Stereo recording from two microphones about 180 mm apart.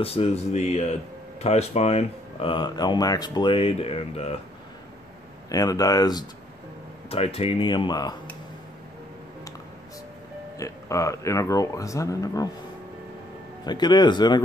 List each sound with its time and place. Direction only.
0.0 s speech: 35° left (ahead or behind)
5.5 s speech: 20° left (ahead or behind)
7.1 s speech: 35° left (ahead or behind)
10.6 s speech: 15° left (ahead or behind)
13.7 s speech: 25° left (ahead or behind)